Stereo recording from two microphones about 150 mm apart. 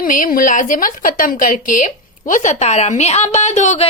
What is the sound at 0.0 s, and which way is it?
A woman's voice, 65° left (ahead or behind).